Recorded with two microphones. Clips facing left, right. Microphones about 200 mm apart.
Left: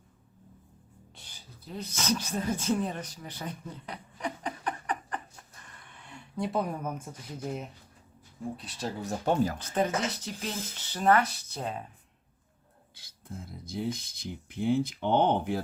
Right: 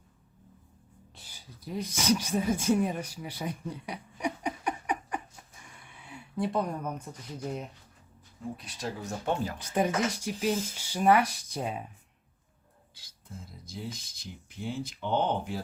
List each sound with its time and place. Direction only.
1.1 s a sound: 5° right (ahead or behind)
8.5 s speech: 30° left (ahead or behind)
9.6 s speech: 10° right (ahead or behind)
12.9 s speech: 55° left (ahead or behind)